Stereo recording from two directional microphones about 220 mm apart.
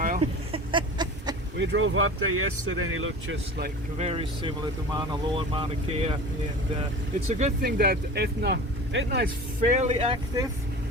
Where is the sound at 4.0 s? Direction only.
25° right (ahead or behind).